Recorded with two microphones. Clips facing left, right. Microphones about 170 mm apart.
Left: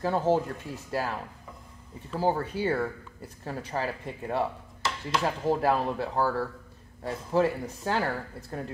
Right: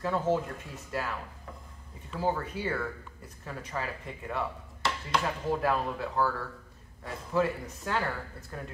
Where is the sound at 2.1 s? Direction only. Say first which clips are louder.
Left 4 dB; 35° left (ahead or behind).